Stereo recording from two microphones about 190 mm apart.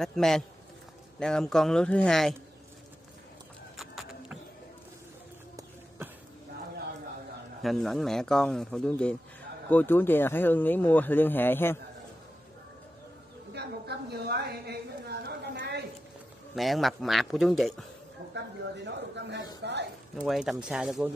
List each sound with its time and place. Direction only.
0.0 s speech: centre (ahead or behind)
3.7 s clip-clop: centre (ahead or behind)
7.6 s speech: centre (ahead or behind)
13.5 s a sound: 60° right (ahead or behind)
16.5 s speech: centre (ahead or behind)
18.9 s a sound: 65° right (ahead or behind)
20.2 s speech: centre (ahead or behind)